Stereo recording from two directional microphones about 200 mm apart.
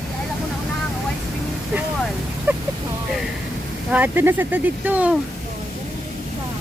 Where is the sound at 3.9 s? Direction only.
10° right (ahead or behind).